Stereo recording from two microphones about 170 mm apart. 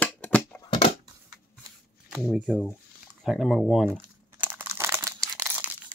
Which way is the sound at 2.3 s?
5° right (ahead or behind).